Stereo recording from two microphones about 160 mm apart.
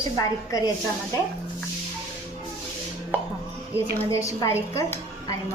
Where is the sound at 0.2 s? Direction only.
20° left (ahead or behind).